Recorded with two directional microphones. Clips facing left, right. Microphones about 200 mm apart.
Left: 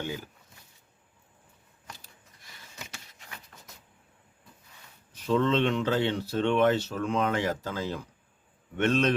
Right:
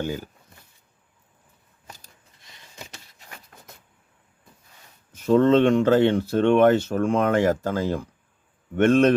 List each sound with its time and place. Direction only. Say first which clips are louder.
0.0 s speech: right 6 dB; 40° right (ahead or behind)
2.7 s printer: right 3 dB; 40° right (ahead or behind)
5.1 s speech: right 8 dB; 50° right (ahead or behind)